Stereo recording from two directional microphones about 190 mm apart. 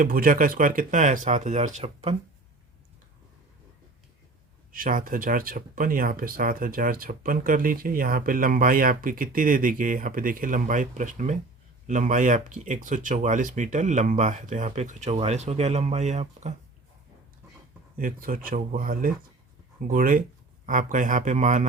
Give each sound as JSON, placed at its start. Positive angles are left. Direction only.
{"t": 0.0, "sound": "speech", "side_deg": -50}
{"t": 4.7, "sound": "speech", "side_deg": -45}
{"t": 17.9, "sound": "speech", "side_deg": -45}